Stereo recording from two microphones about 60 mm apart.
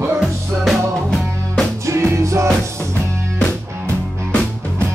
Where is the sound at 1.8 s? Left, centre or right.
Right.